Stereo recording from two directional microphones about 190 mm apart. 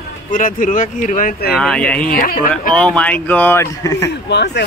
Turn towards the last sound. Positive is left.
turn(degrees=65)  # may be behind; listen again after turning